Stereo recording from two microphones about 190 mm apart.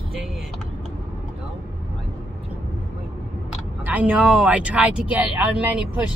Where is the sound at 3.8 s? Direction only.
10° right (ahead or behind).